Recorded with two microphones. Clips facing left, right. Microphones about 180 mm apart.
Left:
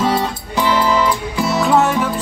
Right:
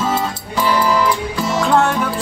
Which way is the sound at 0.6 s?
20° left (ahead or behind).